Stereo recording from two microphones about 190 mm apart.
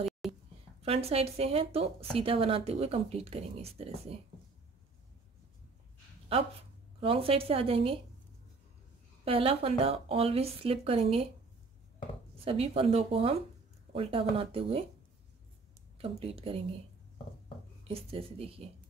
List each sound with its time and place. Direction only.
0.2 s a sound: centre (ahead or behind)
0.8 s speech: 30° right (ahead or behind)
6.3 s a woman's voice: 30° right (ahead or behind)
9.2 s speech: 30° right (ahead or behind)
12.4 s a woman's voice: 30° right (ahead or behind)
16.0 s speech: 30° right (ahead or behind)
17.8 s speech: 30° right (ahead or behind)